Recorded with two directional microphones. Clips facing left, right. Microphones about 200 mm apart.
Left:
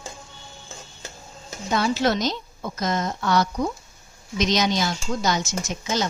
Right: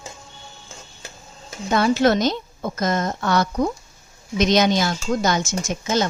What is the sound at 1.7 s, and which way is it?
A woman's voice, 55° right (ahead or behind).